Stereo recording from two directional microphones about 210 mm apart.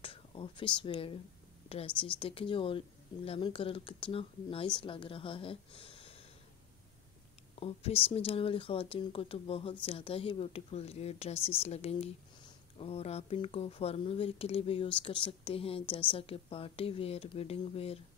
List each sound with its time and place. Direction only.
0.0 s speech: 25° left (ahead or behind)
2.1 s speech: 25° left (ahead or behind)
7.5 s speech: 30° left (ahead or behind)